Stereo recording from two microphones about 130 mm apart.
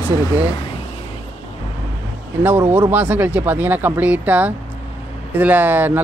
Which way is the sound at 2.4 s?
15° right (ahead or behind).